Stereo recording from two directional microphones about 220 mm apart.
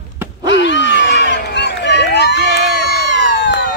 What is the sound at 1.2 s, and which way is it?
Run, 50° left (ahead or behind).